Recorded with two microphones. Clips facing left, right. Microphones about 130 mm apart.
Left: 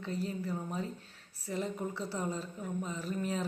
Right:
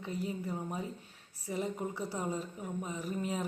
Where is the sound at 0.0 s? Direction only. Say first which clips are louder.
Left 1 dB; 15° right (ahead or behind).